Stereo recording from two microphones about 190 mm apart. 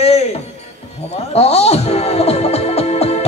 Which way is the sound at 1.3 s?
35° left (ahead or behind).